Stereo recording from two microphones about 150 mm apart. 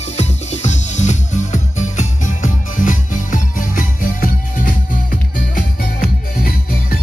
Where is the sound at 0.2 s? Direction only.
50° left (ahead or behind).